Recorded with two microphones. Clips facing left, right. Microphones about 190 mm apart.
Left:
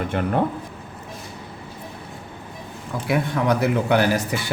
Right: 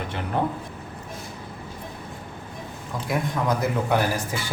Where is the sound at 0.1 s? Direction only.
55° left (ahead or behind).